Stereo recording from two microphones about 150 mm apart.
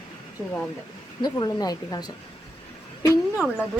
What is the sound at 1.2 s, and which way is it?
Speech, 25° left (ahead or behind).